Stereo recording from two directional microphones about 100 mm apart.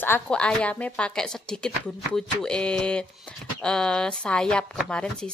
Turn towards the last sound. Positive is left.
turn(degrees=10)  # may be behind; listen again after turning